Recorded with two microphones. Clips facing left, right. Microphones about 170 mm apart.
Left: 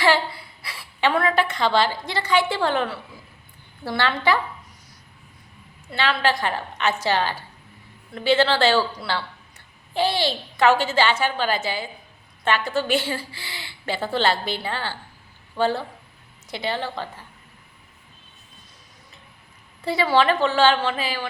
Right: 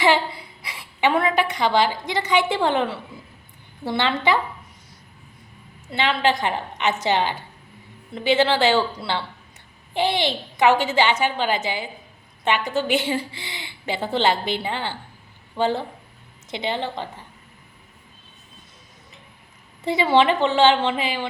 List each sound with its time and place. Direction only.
0.0 s a woman's voice: 20° right (ahead or behind)
5.9 s a woman's voice: 20° right (ahead or behind)
19.8 s a woman's voice: 20° right (ahead or behind)